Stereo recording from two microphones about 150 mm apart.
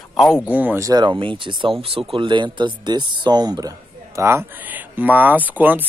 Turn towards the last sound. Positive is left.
turn(degrees=-10)  # may be behind; listen again after turning